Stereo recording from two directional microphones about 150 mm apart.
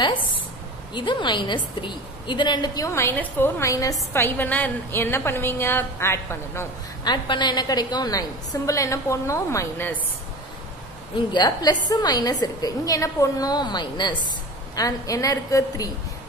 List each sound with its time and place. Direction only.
0.9 s a woman's voice: 30° left (ahead or behind)
7.1 s a woman's voice: 30° left (ahead or behind)
11.3 s a woman's voice: 25° left (ahead or behind)